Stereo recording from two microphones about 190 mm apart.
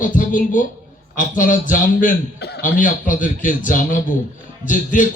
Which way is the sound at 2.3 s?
60° left (ahead or behind).